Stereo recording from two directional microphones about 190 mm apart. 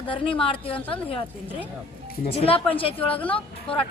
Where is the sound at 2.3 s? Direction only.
30° left (ahead or behind).